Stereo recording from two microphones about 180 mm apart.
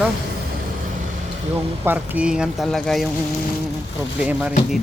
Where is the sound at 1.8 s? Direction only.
10° right (ahead or behind).